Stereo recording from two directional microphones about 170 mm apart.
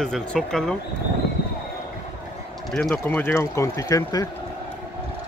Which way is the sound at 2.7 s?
Centre (ahead or behind).